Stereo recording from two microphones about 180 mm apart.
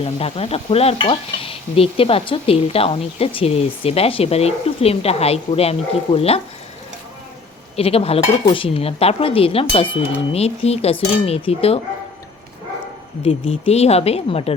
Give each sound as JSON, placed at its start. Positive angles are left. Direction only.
{"t": 0.0, "sound": "stir", "side_deg": 35}
{"t": 7.8, "sound": "stir", "side_deg": 35}
{"t": 13.2, "sound": "stir", "side_deg": 30}